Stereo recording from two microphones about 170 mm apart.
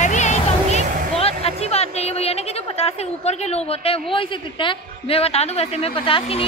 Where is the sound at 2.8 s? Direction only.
40° left (ahead or behind).